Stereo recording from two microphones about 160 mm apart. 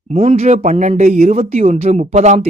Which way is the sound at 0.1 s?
40° right (ahead or behind).